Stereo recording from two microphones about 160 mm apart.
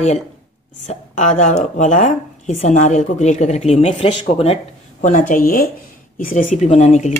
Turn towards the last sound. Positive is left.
turn(degrees=45)  # may be behind; listen again after turning